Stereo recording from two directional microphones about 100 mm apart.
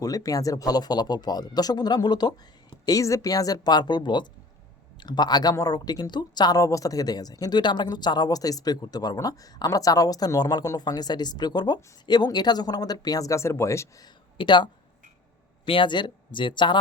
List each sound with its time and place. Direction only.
0.0 s speech: 35° left (ahead or behind)
14.3 s speech: 50° left (ahead or behind)